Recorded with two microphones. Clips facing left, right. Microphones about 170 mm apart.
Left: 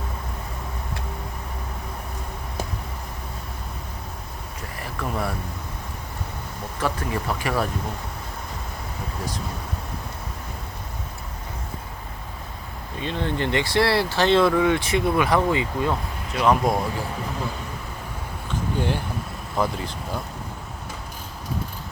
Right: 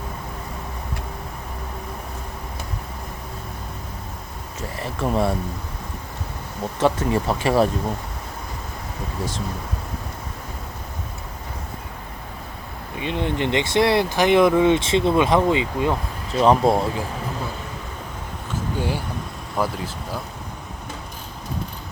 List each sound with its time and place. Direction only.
4.8 s a sound: 25° right (ahead or behind)
6.7 s speech: 25° right (ahead or behind)
13.0 s speech: 15° right (ahead or behind)
16.3 s speech: 30° right (ahead or behind)
18.8 s speech: 10° right (ahead or behind)